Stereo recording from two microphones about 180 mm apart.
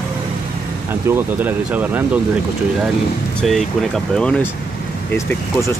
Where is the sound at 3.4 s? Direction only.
Centre (ahead or behind).